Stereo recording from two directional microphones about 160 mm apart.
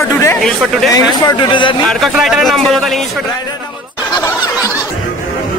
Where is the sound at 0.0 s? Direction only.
20° left (ahead or behind).